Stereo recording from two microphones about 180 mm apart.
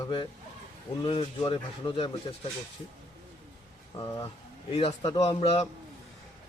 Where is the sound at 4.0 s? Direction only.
30° left (ahead or behind).